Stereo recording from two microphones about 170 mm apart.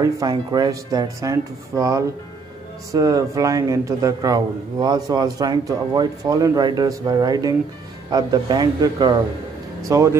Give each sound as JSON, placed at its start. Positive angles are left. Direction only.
{"t": 0.0, "sound": "a man's voice", "side_deg": -25}